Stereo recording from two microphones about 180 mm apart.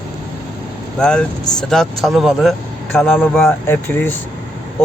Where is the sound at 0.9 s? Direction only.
5° left (ahead or behind).